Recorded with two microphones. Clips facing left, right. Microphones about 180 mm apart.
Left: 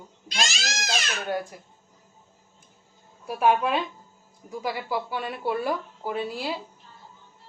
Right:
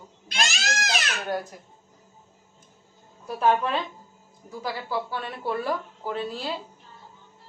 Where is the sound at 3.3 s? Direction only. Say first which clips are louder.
Left 1 dB; 10° left (ahead or behind).